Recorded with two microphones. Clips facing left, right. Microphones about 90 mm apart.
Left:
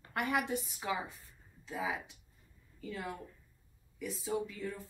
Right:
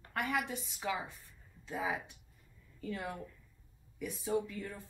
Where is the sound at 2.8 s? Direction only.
5° left (ahead or behind).